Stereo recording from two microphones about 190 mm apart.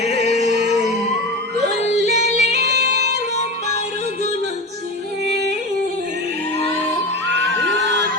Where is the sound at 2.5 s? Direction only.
60° right (ahead or behind).